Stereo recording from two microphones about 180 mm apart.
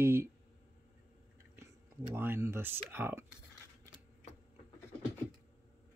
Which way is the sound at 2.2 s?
15° right (ahead or behind).